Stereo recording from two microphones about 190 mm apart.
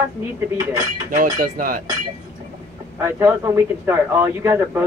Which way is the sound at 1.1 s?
45° right (ahead or behind).